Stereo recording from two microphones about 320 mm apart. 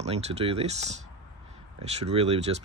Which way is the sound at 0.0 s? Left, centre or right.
Centre.